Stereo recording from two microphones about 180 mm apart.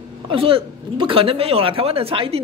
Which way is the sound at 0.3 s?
30° right (ahead or behind).